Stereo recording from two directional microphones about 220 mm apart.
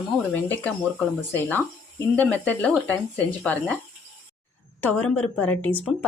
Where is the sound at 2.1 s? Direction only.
5° left (ahead or behind).